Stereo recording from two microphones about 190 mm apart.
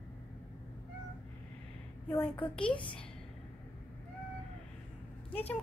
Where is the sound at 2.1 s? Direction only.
5° left (ahead or behind).